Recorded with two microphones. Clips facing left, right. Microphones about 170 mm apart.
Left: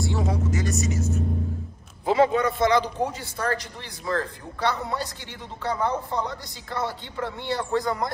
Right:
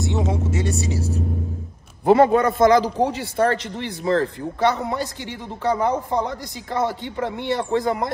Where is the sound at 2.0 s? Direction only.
55° right (ahead or behind).